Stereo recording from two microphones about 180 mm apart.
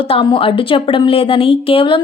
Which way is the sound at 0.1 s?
30° left (ahead or behind).